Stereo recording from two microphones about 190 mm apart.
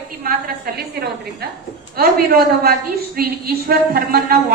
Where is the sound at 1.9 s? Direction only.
55° right (ahead or behind).